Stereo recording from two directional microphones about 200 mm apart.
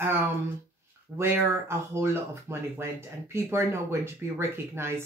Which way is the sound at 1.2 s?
10° right (ahead or behind).